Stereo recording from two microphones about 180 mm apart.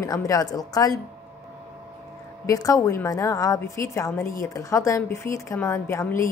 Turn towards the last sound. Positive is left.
turn(degrees=15)  # may be behind; listen again after turning